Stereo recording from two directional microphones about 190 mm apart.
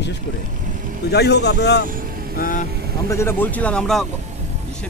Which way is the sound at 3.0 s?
15° left (ahead or behind).